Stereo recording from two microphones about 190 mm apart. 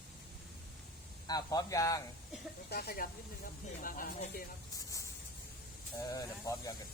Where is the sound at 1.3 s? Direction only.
20° left (ahead or behind).